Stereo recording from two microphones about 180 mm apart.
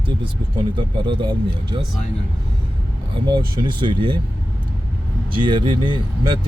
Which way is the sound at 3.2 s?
25° right (ahead or behind).